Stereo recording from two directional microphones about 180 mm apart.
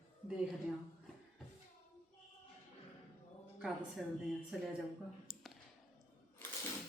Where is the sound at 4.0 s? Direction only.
Centre (ahead or behind).